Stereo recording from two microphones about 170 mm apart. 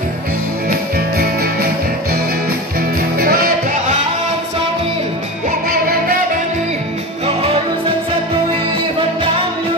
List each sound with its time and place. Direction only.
0.7 s music: 60° right (ahead or behind)
3.2 s music: 60° right (ahead or behind)
5.7 s music: 60° right (ahead or behind)